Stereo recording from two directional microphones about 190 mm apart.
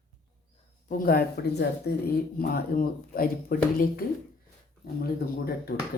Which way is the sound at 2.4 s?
50° left (ahead or behind).